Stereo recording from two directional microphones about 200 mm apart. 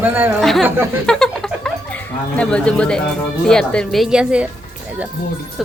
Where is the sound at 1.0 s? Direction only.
5° left (ahead or behind).